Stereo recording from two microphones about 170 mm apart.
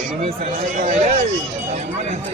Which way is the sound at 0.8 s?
45° right (ahead or behind).